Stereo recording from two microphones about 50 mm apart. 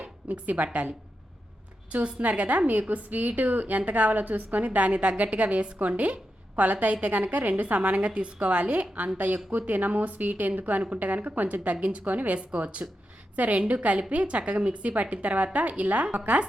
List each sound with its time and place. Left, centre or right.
0.0 s a woman's voice: right
1.9 s a woman's voice: right